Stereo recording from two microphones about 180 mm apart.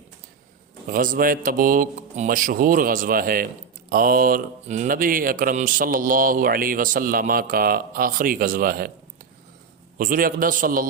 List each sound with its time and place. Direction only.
0.9 s speech: 50° right (ahead or behind)
10.0 s speech: 50° right (ahead or behind)